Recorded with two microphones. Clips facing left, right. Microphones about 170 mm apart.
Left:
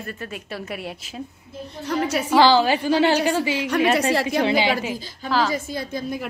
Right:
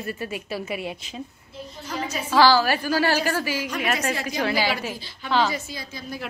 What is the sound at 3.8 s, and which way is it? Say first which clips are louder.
Speech: left 8 dB; 30° left (ahead or behind).